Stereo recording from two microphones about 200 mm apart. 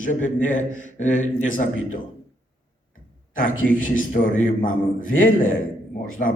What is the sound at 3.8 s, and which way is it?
A man's voice, 40° left (ahead or behind).